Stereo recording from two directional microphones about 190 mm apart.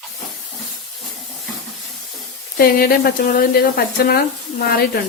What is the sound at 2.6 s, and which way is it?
Speech, 50° left (ahead or behind).